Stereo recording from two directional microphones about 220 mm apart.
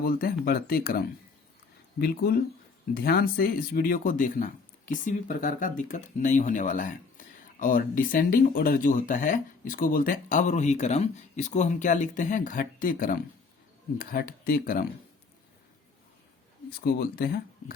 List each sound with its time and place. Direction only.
0.4 s speech: 40° left (ahead or behind)
16.8 s speech: 45° left (ahead or behind)